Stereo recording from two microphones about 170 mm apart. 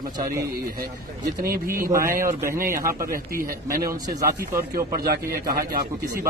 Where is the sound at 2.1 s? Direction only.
55° right (ahead or behind).